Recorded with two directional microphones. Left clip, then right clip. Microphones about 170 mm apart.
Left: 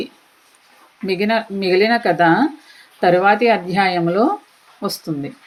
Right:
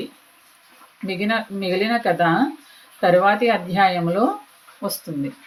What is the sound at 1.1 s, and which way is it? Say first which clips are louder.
Speech: left 5 dB; 40° left (ahead or behind).